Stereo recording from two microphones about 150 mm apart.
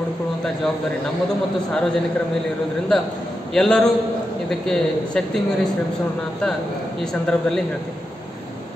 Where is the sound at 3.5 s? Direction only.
5° left (ahead or behind).